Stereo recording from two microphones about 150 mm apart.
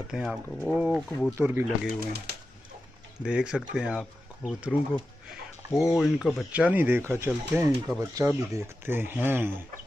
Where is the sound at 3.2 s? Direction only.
5° right (ahead or behind).